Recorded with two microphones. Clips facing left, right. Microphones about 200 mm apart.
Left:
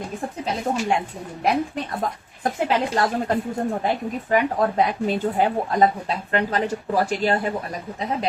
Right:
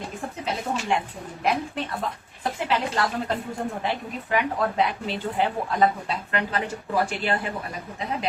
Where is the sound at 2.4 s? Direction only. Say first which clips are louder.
Left 4 dB; 45° left (ahead or behind).